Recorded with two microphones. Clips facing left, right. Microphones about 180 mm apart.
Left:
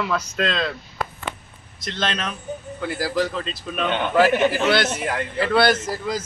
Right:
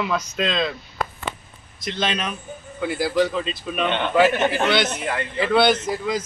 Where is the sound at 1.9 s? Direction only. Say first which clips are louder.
Right 1 dB; 5° right (ahead or behind).